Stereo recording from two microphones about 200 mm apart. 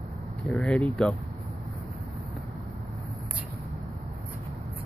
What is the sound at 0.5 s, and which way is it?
Speech, 5° left (ahead or behind).